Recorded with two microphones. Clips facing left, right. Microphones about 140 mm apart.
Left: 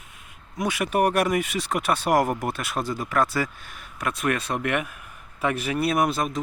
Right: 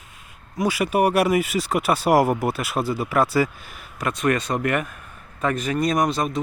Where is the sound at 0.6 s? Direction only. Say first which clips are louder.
Right 3 dB; centre (ahead or behind).